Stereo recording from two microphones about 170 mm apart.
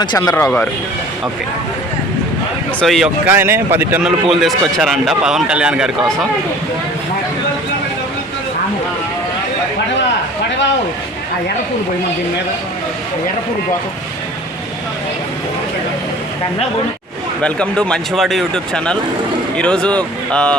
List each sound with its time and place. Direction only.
0.0 s speech: 25° left (ahead or behind)
0.3 s speech: 10° left (ahead or behind)
2.8 s a man's voice: centre (ahead or behind)
3.2 s a man's voice: 15° right (ahead or behind)
17.4 s a man's voice: 5° left (ahead or behind)